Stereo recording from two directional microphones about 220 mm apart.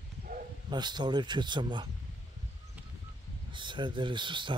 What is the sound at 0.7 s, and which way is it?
A man's voice, 20° right (ahead or behind).